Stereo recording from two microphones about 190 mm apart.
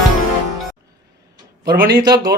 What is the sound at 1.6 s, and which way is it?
Speech, 55° right (ahead or behind).